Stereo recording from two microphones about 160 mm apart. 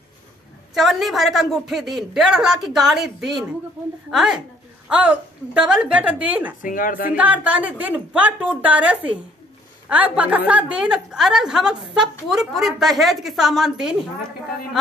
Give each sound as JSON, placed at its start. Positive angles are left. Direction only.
{"t": 0.7, "sound": "a woman's voice", "side_deg": 0}
{"t": 6.6, "sound": "a woman's voice", "side_deg": 60}
{"t": 7.2, "sound": "a woman's voice", "side_deg": -10}